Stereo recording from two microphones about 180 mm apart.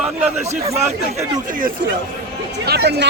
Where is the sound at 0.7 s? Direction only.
15° right (ahead or behind).